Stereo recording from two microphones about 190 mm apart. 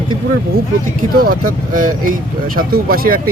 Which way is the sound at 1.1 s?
50° right (ahead or behind).